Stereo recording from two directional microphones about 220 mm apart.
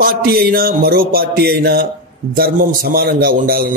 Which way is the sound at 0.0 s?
45° right (ahead or behind).